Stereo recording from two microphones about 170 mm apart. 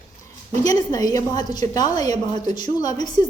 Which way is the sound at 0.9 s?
20° left (ahead or behind).